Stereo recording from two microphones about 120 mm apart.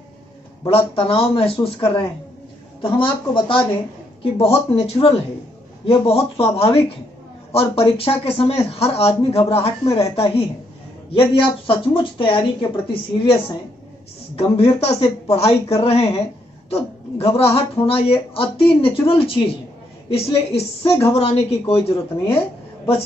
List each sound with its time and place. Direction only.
0.7 s a woman's voice: 50° left (ahead or behind)
14.3 s a woman's voice: 60° left (ahead or behind)